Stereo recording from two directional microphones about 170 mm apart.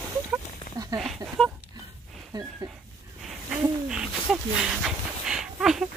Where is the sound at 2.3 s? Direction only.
25° right (ahead or behind).